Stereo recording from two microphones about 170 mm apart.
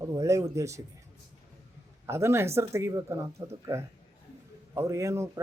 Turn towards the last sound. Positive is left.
turn(degrees=-15)  # may be behind; listen again after turning